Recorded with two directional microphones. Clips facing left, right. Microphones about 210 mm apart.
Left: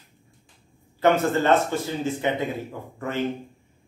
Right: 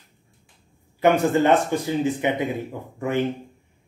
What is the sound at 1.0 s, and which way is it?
Speech, 15° right (ahead or behind).